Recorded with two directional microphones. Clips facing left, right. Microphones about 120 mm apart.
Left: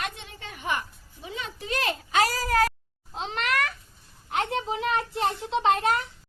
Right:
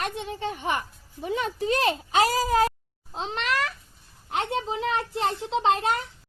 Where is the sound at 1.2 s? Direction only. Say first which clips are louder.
Right 9 dB; 50° right (ahead or behind).